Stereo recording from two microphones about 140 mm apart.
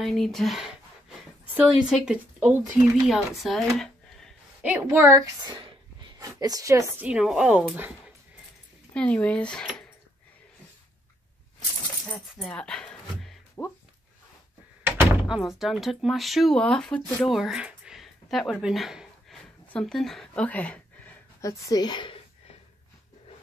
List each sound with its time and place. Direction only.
0.0 s speech: centre (ahead or behind)
3.7 s a sound: 5° left (ahead or behind)
4.6 s a woman's voice: 15° right (ahead or behind)
7.0 s speech: 5° right (ahead or behind)
8.9 s speech: 10° left (ahead or behind)
12.4 s a sound: 5° left (ahead or behind)
13.6 s speech: 15° left (ahead or behind)
14.8 s door: 15° right (ahead or behind)
15.2 s speech: 5° right (ahead or behind)
21.4 s speech: 25° left (ahead or behind)